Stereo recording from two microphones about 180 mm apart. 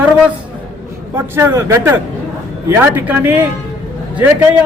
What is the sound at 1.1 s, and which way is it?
A man's voice, 15° right (ahead or behind).